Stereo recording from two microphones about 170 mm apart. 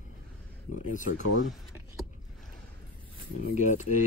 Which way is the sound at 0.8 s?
50° left (ahead or behind).